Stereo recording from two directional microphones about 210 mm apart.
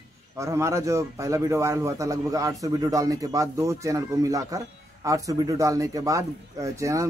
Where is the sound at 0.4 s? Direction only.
15° right (ahead or behind).